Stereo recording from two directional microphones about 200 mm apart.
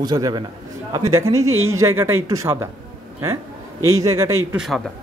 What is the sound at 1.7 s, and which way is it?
Speech, 10° right (ahead or behind).